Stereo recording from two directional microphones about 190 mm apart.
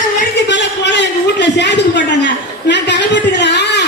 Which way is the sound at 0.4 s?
65° left (ahead or behind).